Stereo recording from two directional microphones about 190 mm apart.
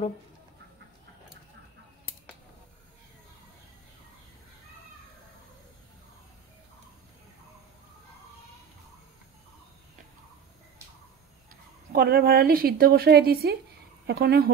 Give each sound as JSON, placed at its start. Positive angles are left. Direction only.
{"t": 11.9, "sound": "a woman's voice", "side_deg": -55}